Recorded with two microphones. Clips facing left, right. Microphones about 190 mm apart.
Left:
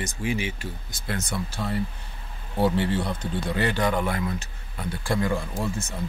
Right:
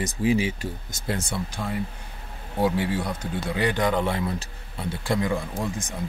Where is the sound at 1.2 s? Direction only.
25° right (ahead or behind).